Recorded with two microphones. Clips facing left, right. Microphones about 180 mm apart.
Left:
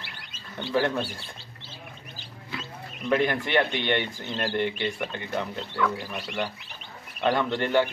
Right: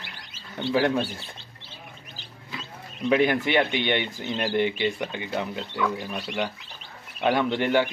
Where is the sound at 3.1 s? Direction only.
15° right (ahead or behind).